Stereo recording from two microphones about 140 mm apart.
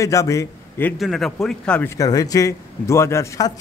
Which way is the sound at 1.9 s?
25° left (ahead or behind).